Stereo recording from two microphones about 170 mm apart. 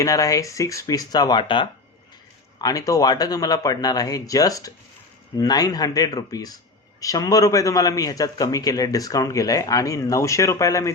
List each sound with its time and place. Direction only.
0.0 s a man's voice: 20° left (ahead or behind)